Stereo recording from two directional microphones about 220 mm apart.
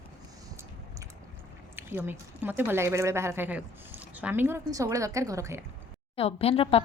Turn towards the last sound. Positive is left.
turn(degrees=25)  # may be behind; listen again after turning